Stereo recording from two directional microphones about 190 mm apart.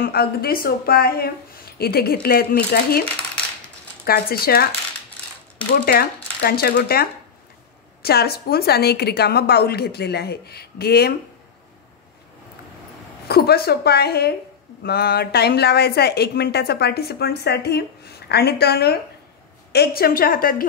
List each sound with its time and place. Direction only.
0.0 s speech: 55° left (ahead or behind)
4.0 s speech: 55° left (ahead or behind)
5.9 s a woman's voice: 55° left (ahead or behind)
13.3 s a woman's voice: 55° left (ahead or behind)